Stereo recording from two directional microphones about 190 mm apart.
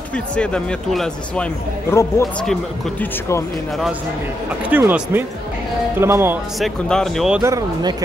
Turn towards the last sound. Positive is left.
turn(degrees=-20)  # may be behind; listen again after turning